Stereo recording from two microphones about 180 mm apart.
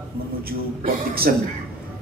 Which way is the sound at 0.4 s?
55° right (ahead or behind).